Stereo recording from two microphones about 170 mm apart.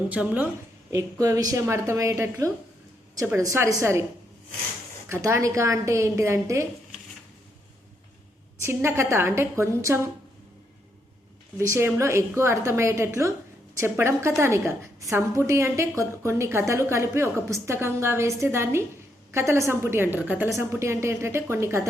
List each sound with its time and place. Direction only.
0.1 s a woman's voice: 10° right (ahead or behind)
0.9 s a woman's voice: 20° right (ahead or behind)
5.0 s a woman's voice: 15° right (ahead or behind)
8.6 s a woman's voice: 15° right (ahead or behind)
11.5 s a woman's voice: 15° right (ahead or behind)